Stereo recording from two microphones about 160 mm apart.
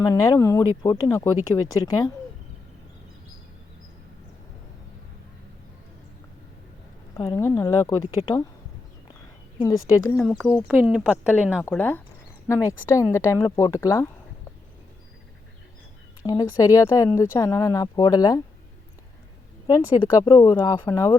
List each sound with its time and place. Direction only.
0.0 s speech: 20° left (ahead or behind)
7.2 s speech: 20° left (ahead or behind)
8.0 s speech: 35° left (ahead or behind)
9.6 s speech: 20° left (ahead or behind)
10.8 s speech: 5° right (ahead or behind)
11.5 s speech: 10° left (ahead or behind)
16.2 s speech: 25° left (ahead or behind)
19.6 s speech: 20° left (ahead or behind)